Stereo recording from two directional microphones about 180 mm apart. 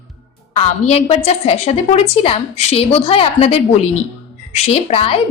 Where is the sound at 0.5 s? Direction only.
35° left (ahead or behind).